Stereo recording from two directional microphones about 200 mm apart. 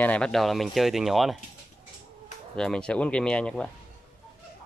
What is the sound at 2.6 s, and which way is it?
Speech, 5° left (ahead or behind).